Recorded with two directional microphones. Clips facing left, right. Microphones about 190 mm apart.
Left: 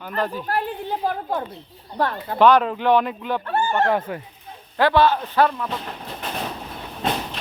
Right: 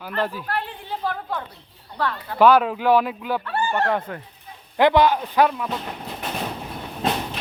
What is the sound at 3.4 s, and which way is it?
Speech, 45° left (ahead or behind).